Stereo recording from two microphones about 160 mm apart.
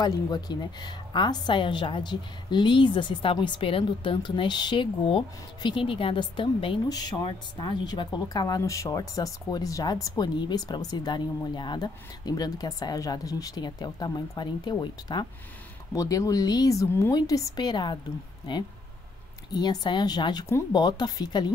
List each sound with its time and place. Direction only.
0.0 s a woman's voice: 25° left (ahead or behind)
19.5 s a woman's voice: 25° left (ahead or behind)